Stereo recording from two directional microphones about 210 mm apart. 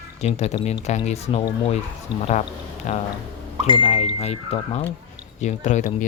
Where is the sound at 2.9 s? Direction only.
35° left (ahead or behind).